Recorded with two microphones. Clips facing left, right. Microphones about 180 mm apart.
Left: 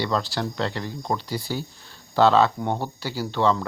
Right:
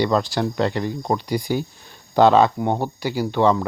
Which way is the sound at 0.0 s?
15° right (ahead or behind).